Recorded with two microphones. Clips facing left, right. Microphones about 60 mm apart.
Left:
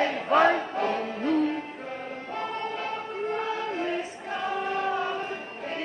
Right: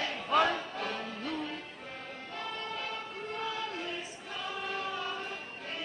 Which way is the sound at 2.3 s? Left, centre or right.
Left.